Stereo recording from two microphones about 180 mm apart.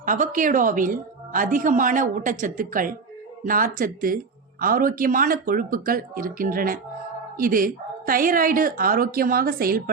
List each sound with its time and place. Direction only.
0.0 s a woman's voice: 50° right (ahead or behind)